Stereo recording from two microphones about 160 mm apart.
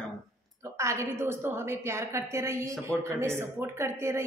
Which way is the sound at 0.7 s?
15° right (ahead or behind).